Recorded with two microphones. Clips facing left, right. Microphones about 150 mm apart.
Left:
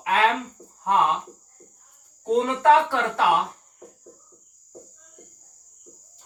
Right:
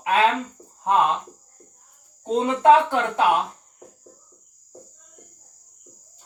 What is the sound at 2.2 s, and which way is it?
Speech, 20° right (ahead or behind).